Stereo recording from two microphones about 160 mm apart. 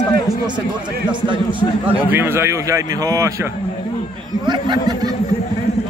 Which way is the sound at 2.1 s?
15° right (ahead or behind).